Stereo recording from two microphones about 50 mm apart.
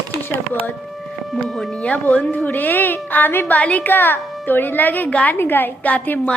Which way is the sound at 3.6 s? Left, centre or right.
Left.